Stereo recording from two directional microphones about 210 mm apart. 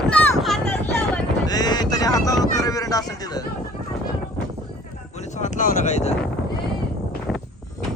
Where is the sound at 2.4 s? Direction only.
15° left (ahead or behind).